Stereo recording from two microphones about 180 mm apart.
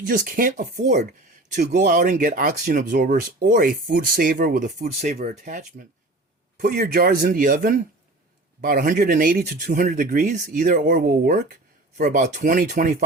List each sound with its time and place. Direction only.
0.0 s speech: 50° right (ahead or behind)
6.6 s speech: 55° right (ahead or behind)